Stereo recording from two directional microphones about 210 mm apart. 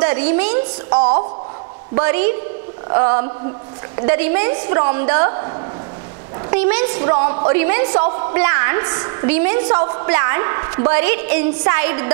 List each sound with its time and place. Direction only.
0.1 s a woman's voice: 10° right (ahead or behind)
0.8 s a woman's voice: 30° right (ahead or behind)
2.0 s a woman's voice: 15° right (ahead or behind)
2.9 s a woman's voice: 25° right (ahead or behind)
3.9 s a woman's voice: 15° right (ahead or behind)
6.5 s a woman's voice: 10° right (ahead or behind)
7.0 s a woman's voice: 20° right (ahead or behind)